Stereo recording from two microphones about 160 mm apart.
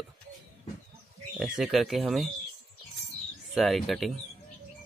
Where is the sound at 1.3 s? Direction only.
Centre (ahead or behind).